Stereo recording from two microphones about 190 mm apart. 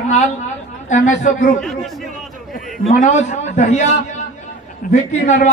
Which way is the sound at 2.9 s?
40° left (ahead or behind).